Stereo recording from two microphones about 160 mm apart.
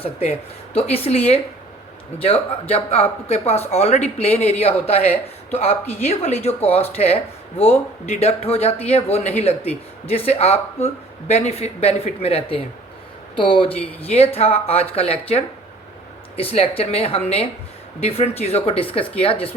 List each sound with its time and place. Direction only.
0.0 s speech: 40° left (ahead or behind)